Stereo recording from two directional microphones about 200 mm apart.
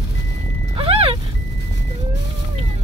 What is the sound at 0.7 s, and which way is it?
Vehicle, 30° right (ahead or behind).